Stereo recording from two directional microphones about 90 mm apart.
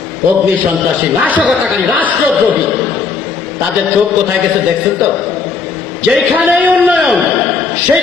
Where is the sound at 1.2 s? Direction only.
15° right (ahead or behind).